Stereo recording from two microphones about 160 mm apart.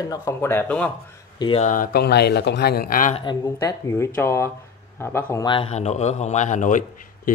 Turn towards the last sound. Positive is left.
turn(degrees=50)  # may be behind; listen again after turning